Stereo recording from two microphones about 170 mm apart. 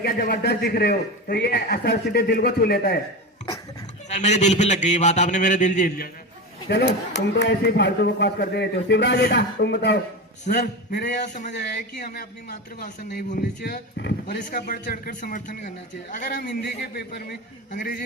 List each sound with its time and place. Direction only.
0.0 s a man's voice: 60° left (ahead or behind)
4.1 s a man's voice: 40° left (ahead or behind)
6.7 s speech: 85° left
11.5 s a man's voice: 90° left; by 16.6 s 60° left (ahead or behind)
16.6 s a man's voice: 80° left